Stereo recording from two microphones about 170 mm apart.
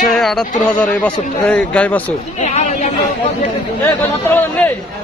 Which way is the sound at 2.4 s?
45° left (ahead or behind).